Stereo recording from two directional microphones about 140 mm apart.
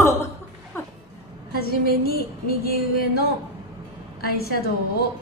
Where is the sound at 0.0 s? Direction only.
20° left (ahead or behind).